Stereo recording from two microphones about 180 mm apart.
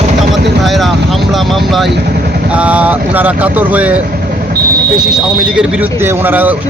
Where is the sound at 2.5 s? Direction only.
10° right (ahead or behind).